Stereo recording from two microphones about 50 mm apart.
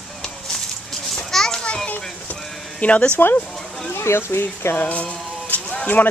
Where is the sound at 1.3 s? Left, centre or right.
Centre.